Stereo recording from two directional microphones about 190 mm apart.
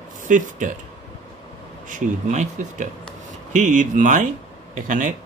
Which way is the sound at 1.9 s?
40° right (ahead or behind).